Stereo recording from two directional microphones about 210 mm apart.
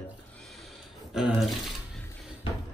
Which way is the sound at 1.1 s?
Centre (ahead or behind).